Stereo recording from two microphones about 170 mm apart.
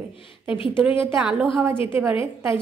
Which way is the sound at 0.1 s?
30° left (ahead or behind).